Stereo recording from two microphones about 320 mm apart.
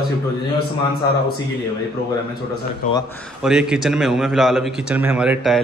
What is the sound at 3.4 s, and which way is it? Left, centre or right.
A man's voice, centre.